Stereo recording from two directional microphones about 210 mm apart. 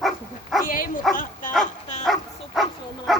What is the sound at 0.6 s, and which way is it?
Bow-wow, 40° left (ahead or behind).